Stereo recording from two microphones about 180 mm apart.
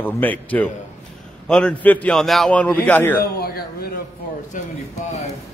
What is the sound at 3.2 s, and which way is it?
Speech, 55° left (ahead or behind).